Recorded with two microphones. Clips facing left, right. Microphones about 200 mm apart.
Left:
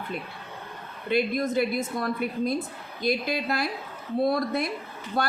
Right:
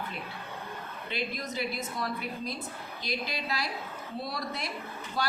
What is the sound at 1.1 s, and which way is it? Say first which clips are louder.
Speech: left 11 dB; 50° left (ahead or behind).